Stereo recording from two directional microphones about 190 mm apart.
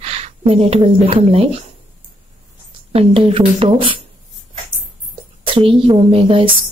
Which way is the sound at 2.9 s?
30° right (ahead or behind).